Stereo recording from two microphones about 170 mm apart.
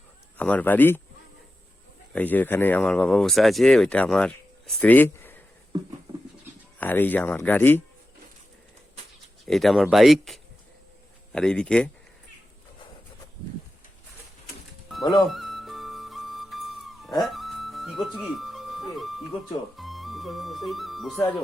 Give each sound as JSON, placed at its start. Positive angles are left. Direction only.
{"t": 0.3, "sound": "speech", "side_deg": 10}
{"t": 2.1, "sound": "speech", "side_deg": 10}
{"t": 6.7, "sound": "speech", "side_deg": 10}
{"t": 9.5, "sound": "speech", "side_deg": 0}
{"t": 15.0, "sound": "speech", "side_deg": 30}
{"t": 15.3, "sound": "flute", "side_deg": 0}
{"t": 17.2, "sound": "music", "side_deg": 0}